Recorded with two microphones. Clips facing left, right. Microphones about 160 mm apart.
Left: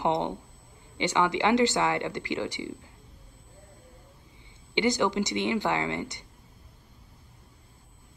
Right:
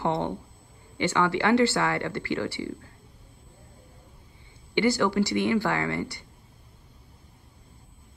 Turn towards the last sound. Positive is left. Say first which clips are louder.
# right 1 dB
turn(degrees=20)  # may be behind; listen again after turning